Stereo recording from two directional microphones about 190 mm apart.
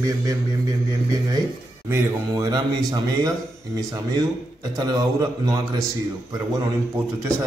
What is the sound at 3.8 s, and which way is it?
A man's voice, 20° right (ahead or behind).